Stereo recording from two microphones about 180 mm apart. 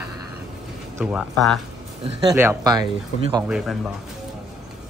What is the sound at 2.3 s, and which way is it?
Speech, 15° right (ahead or behind).